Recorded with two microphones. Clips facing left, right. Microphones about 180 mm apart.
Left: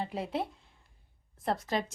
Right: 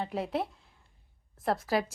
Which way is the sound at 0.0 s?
Centre (ahead or behind).